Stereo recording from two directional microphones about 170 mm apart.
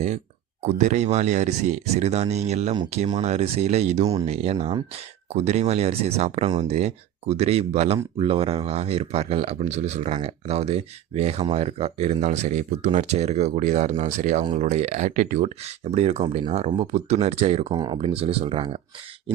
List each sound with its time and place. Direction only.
0.6 s speech: 45° right (ahead or behind)